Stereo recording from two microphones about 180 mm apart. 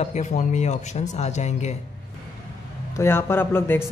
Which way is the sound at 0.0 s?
40° left (ahead or behind).